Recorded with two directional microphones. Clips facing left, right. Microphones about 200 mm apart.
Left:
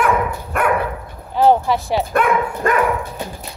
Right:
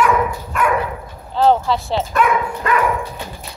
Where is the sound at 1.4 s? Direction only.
15° left (ahead or behind).